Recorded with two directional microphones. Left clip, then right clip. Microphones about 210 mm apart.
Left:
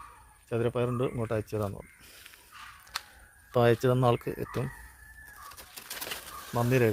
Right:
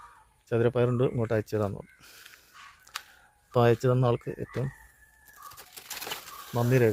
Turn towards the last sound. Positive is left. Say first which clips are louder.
# right 2 dB
turn(degrees=0)  # may be behind; listen again after turning